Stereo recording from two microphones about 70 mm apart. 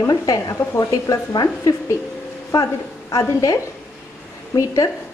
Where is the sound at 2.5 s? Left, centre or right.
Left.